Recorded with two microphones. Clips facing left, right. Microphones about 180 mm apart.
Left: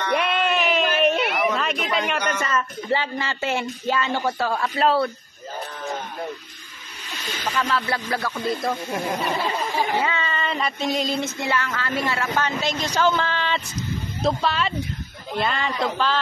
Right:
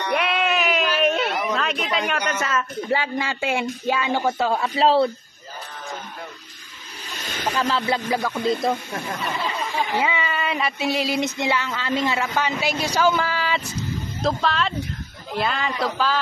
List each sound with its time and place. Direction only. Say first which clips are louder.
0.1 s a sound: even; centre (ahead or behind)
1.5 s a man's voice: even; centre (ahead or behind); by 5.1 s 25° right (ahead or behind)
7.2 s speech: right 2 dB; 50° right (ahead or behind)
7.7 s speech: right 2 dB; 20° right (ahead or behind)
9.9 s a man's voice: right 1 dB; 15° right (ahead or behind)
11.1 s a man's voice: right 2 dB; 15° right (ahead or behind)